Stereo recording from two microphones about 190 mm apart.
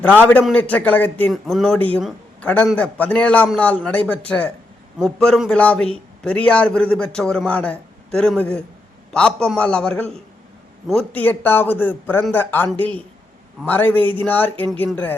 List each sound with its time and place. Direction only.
0.0 s a man's voice: 10° left (ahead or behind)